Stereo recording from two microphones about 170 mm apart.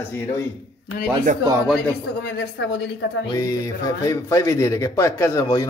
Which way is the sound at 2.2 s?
90° left.